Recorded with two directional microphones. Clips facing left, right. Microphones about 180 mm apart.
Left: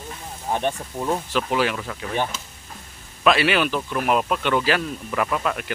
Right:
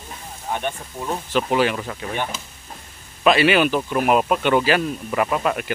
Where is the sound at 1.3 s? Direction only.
Centre (ahead or behind).